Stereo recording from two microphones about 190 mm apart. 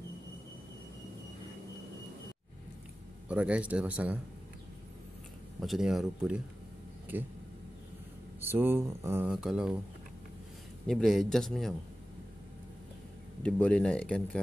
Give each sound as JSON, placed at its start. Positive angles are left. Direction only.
{"t": 3.3, "sound": "speech", "side_deg": -5}
{"t": 5.6, "sound": "speech", "side_deg": 0}
{"t": 8.4, "sound": "speech", "side_deg": -10}
{"t": 9.3, "sound": "speech", "side_deg": 0}
{"t": 10.9, "sound": "speech", "side_deg": 0}
{"t": 13.4, "sound": "speech", "side_deg": 5}